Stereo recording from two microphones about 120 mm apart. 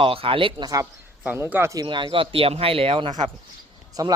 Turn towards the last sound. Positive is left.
turn(degrees=-30)  # may be behind; listen again after turning